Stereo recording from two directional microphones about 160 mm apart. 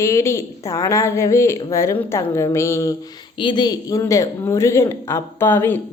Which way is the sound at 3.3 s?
30° left (ahead or behind).